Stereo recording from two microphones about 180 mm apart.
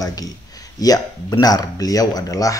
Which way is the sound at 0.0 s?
20° left (ahead or behind).